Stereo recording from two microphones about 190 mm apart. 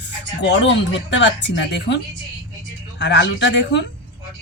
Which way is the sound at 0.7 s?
70° left (ahead or behind).